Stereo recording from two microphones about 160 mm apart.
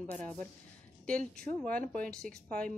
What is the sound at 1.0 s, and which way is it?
A woman's voice, 5° left (ahead or behind).